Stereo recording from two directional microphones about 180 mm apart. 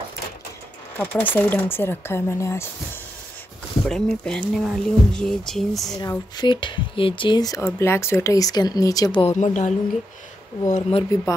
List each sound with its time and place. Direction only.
0.9 s speech: 10° left (ahead or behind)
3.9 s speech: 5° left (ahead or behind)
5.9 s speech: 20° left (ahead or behind)
9.2 s a woman's voice: 40° left (ahead or behind)